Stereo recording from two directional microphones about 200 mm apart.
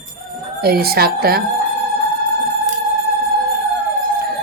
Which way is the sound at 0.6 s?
50° right (ahead or behind).